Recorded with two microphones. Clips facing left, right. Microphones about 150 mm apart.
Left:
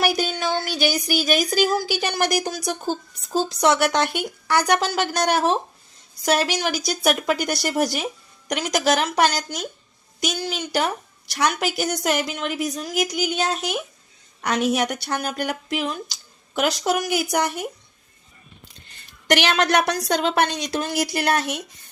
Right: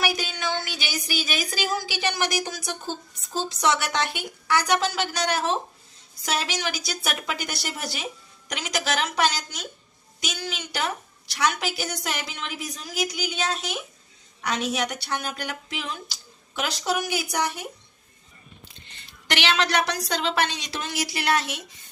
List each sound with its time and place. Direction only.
0.2 s a sound: 45° left (ahead or behind)
0.7 s a woman's voice: 40° left (ahead or behind)
6.6 s a woman's voice: 45° left (ahead or behind)
19.3 s a woman's voice: 45° left (ahead or behind)